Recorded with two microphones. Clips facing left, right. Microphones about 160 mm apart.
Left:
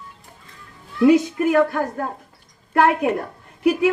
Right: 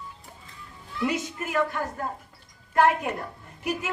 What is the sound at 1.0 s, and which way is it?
Speech, 60° left (ahead or behind).